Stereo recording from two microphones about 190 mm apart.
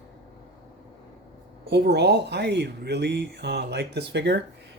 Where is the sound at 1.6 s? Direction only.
60° right (ahead or behind).